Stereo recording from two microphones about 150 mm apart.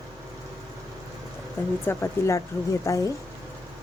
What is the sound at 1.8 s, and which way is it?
Speech, 15° left (ahead or behind).